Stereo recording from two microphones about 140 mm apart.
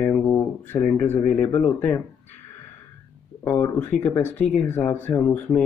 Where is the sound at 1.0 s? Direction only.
15° left (ahead or behind).